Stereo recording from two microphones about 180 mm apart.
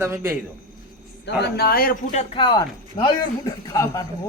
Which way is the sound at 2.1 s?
40° left (ahead or behind).